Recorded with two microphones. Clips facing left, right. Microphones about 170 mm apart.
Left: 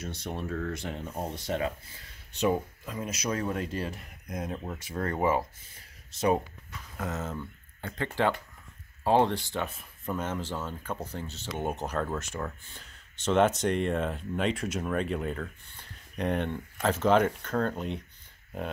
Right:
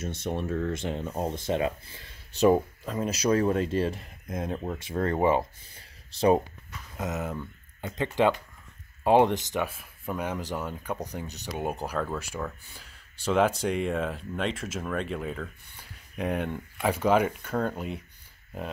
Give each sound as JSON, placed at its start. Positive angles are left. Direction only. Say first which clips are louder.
{"t": 0.2, "sound": "speech", "louder": "right 6 dB", "side_deg": -55}
{"t": 0.5, "sound": "speech", "louder": "right 4 dB", "side_deg": -25}
{"t": 2.8, "sound": "speech", "louder": "right 6 dB", "side_deg": -35}
{"t": 7.0, "sound": "speech", "louder": "right 2 dB", "side_deg": -15}
{"t": 15.7, "sound": "a sound", "louder": "right 1 dB", "side_deg": -5}
{"t": 16.8, "sound": "speech", "louder": "even", "side_deg": -10}